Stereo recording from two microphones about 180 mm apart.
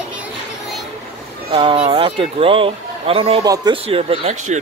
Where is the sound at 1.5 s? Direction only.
30° right (ahead or behind).